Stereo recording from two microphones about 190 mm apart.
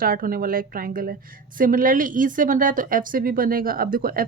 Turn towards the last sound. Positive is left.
turn(degrees=-50)  # may be behind; listen again after turning